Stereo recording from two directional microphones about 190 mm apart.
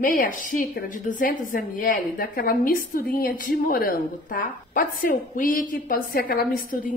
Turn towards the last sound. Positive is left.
turn(degrees=50)  # may be behind; listen again after turning